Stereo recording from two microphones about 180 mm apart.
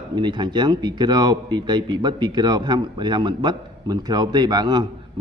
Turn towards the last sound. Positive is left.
turn(degrees=-25)  # may be behind; listen again after turning